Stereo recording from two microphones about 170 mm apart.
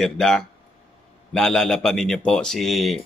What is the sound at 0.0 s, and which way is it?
Speech, 5° left (ahead or behind).